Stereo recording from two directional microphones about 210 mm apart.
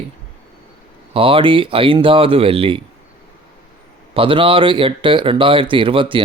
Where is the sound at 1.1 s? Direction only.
25° right (ahead or behind).